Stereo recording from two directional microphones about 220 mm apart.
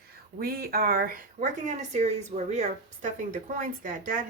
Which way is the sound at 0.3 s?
45° right (ahead or behind).